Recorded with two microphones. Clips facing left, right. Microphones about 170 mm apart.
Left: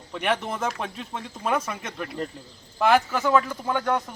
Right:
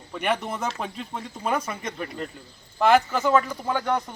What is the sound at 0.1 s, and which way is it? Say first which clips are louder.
A man's voice: even; centre (ahead or behind).